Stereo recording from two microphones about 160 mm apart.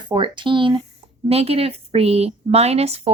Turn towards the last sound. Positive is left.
turn(degrees=-40)  # may be behind; listen again after turning